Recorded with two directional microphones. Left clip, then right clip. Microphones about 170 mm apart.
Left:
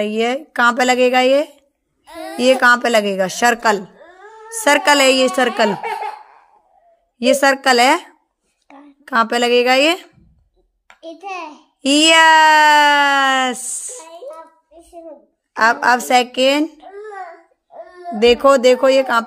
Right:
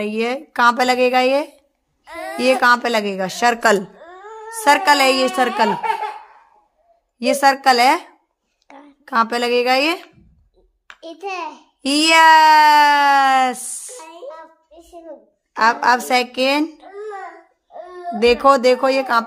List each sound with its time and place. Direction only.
0.0 s speech: 10° left (ahead or behind)
7.2 s a woman's voice: 20° left (ahead or behind)
8.6 s a sound: 35° right (ahead or behind)
9.0 s a woman's voice: 20° left (ahead or behind)
11.0 s a child's voice: 35° right (ahead or behind)
11.8 s speech: 15° left (ahead or behind)
15.5 s speech: 15° left (ahead or behind)
18.2 s speech: 10° left (ahead or behind)